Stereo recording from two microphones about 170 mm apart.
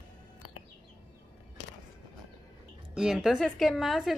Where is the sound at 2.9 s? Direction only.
5° right (ahead or behind).